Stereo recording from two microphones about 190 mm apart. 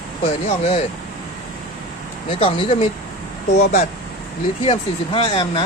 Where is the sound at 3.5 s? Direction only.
60° left (ahead or behind).